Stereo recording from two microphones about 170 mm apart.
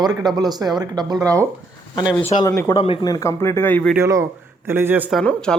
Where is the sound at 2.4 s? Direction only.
20° left (ahead or behind).